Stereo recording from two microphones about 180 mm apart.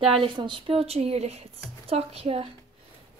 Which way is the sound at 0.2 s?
25° right (ahead or behind).